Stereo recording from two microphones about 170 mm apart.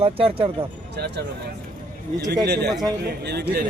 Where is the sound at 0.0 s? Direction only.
35° right (ahead or behind).